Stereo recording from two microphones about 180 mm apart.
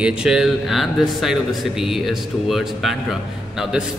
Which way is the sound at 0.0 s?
5° right (ahead or behind).